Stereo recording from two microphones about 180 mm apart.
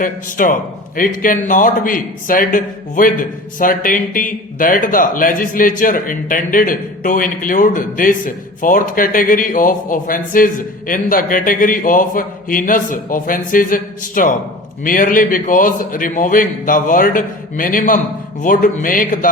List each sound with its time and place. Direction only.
0.0 s a man's voice: 50° left (ahead or behind)